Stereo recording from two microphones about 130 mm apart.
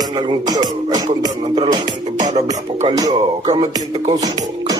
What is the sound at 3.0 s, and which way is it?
Speech, 35° right (ahead or behind).